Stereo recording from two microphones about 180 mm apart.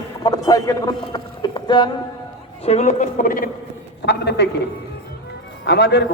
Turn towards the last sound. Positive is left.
turn(degrees=70)  # may be behind; listen again after turning